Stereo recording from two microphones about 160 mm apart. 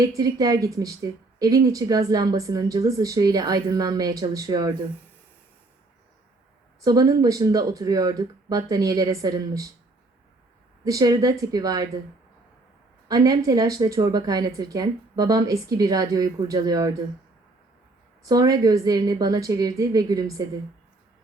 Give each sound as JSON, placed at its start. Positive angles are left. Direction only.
{"t": 0.2, "sound": "speech", "side_deg": -20}
{"t": 6.8, "sound": "speech", "side_deg": -20}
{"t": 10.8, "sound": "speech", "side_deg": -20}
{"t": 13.1, "sound": "speech", "side_deg": -20}
{"t": 18.3, "sound": "speech", "side_deg": -25}